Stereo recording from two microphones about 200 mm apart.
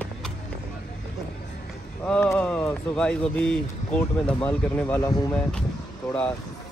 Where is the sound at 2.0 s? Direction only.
5° left (ahead or behind).